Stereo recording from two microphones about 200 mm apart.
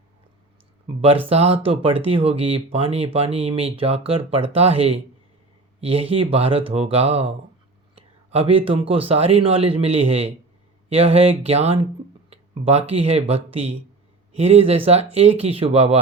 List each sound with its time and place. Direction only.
1.3 s speech: 30° right (ahead or behind)